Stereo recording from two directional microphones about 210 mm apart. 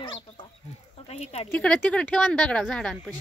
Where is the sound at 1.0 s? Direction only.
30° left (ahead or behind).